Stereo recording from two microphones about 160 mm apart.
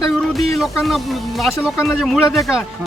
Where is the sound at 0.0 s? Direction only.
Centre (ahead or behind).